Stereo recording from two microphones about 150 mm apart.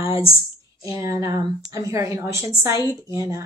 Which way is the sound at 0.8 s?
20° right (ahead or behind).